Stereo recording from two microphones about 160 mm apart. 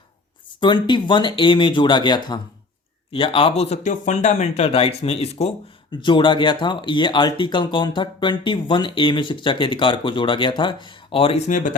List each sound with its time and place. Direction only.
0.6 s speech: 30° left (ahead or behind); by 11.8 s 50° left (ahead or behind)